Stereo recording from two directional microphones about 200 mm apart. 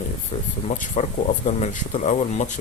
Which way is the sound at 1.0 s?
35° left (ahead or behind).